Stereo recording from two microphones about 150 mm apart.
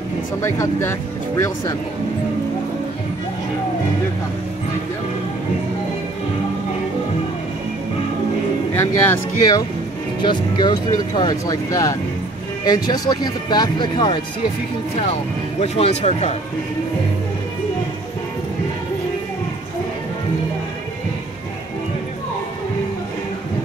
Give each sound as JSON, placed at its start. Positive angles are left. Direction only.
{"t": 0.4, "sound": "speech", "side_deg": 20}
{"t": 8.7, "sound": "speech", "side_deg": 15}
{"t": 10.2, "sound": "speech", "side_deg": 30}
{"t": 15.6, "sound": "speech", "side_deg": 45}